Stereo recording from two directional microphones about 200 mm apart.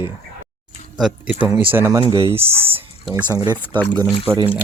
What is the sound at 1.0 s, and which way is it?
Speech, centre (ahead or behind).